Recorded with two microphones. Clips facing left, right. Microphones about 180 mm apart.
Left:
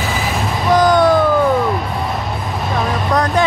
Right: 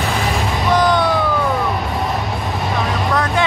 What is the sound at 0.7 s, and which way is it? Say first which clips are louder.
Music: left 3 dB; 45° left (ahead or behind).